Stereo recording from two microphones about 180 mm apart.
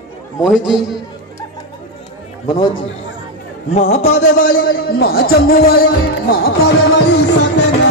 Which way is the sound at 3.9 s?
35° left (ahead or behind).